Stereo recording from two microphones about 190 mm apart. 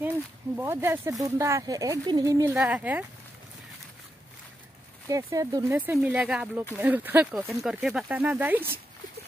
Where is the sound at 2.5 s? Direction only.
5° right (ahead or behind).